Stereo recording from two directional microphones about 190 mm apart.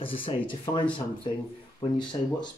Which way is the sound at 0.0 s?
30° left (ahead or behind).